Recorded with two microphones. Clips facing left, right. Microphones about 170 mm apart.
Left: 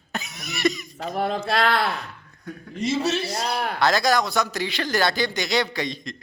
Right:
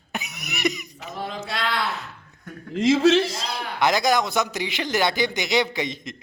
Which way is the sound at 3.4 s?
60° left (ahead or behind).